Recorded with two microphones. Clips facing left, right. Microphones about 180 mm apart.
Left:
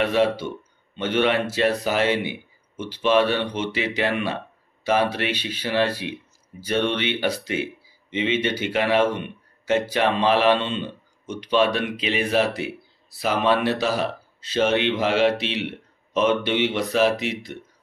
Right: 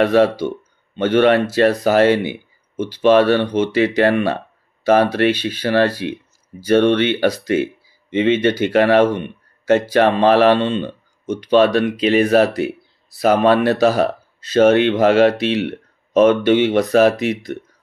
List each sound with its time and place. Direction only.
0.0 s speech: 40° right (ahead or behind)